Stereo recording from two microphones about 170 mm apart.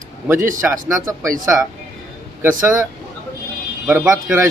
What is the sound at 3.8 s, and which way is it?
Speech, 10° right (ahead or behind).